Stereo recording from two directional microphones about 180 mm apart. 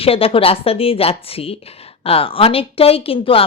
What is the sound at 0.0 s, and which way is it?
Speech, 30° left (ahead or behind).